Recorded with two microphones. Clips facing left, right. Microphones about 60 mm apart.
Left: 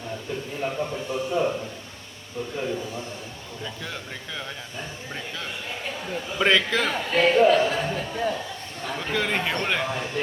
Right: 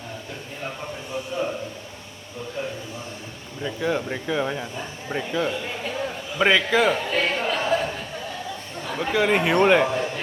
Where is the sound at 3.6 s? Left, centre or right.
Centre.